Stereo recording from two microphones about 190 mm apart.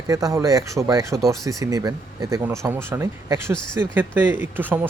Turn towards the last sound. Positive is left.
turn(degrees=-10)  # may be behind; listen again after turning